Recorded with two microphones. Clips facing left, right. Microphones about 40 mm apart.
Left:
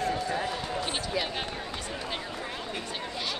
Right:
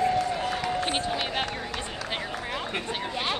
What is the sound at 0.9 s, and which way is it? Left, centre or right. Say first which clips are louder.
Run: right 5 dB; right.